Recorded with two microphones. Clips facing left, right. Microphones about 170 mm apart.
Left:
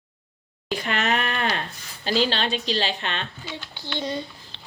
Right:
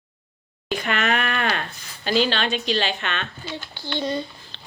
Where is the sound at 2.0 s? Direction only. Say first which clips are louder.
Right 2 dB; 35° left (ahead or behind).